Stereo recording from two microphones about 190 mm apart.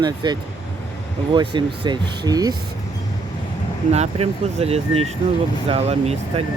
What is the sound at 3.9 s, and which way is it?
Speech, 35° right (ahead or behind).